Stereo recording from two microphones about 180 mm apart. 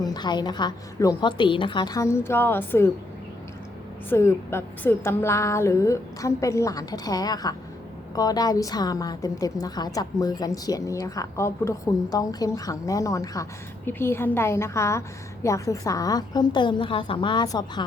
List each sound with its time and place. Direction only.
0.0 s a woman's voice: 25° left (ahead or behind)
4.1 s a woman's voice: 15° left (ahead or behind)